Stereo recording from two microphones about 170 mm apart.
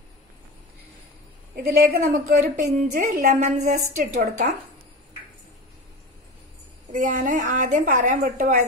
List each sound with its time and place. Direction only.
1.5 s a woman's voice: 60° right (ahead or behind)
2.3 s a woman's voice: 45° right (ahead or behind)
6.9 s a woman's voice: 50° right (ahead or behind)